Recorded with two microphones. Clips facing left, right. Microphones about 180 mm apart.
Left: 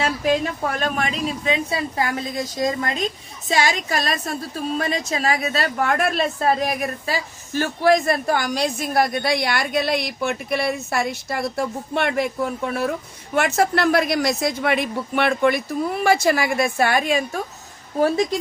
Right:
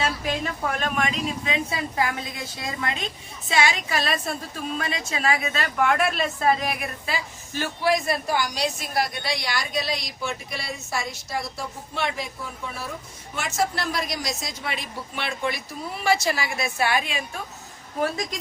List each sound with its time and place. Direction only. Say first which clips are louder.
0.8 s a woman's voice: left 2 dB; 35° left (ahead or behind)